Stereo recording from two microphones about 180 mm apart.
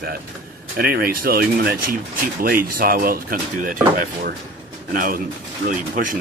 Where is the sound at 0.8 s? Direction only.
55° right (ahead or behind).